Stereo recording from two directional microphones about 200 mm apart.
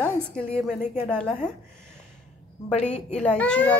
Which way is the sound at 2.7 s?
35° left (ahead or behind).